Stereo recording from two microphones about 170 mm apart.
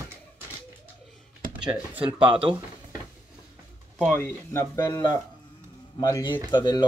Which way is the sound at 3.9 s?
15° left (ahead or behind).